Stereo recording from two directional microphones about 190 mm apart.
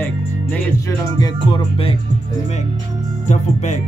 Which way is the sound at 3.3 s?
40° left (ahead or behind).